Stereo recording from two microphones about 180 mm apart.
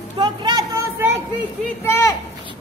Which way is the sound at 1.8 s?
15° left (ahead or behind).